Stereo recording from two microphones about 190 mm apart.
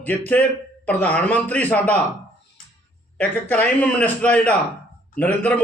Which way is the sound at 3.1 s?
10° left (ahead or behind).